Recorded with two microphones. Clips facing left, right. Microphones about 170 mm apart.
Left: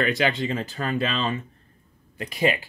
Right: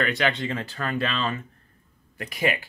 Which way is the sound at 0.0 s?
20° left (ahead or behind).